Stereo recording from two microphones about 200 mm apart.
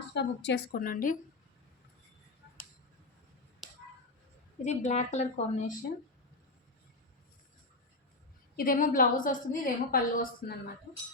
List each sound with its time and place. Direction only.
0.1 s a woman's voice: 60° left (ahead or behind); by 1.1 s 45° left (ahead or behind)
4.6 s a woman's voice: 35° left (ahead or behind)
8.5 s a woman's voice: 45° left (ahead or behind)